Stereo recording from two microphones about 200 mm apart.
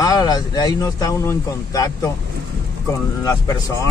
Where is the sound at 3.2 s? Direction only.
15° left (ahead or behind).